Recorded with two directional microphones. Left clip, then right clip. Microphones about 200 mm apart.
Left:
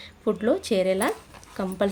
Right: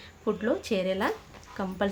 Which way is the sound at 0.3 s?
25° left (ahead or behind).